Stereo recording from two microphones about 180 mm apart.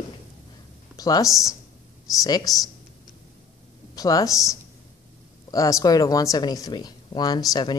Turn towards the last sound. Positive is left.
turn(degrees=25)  # may be behind; listen again after turning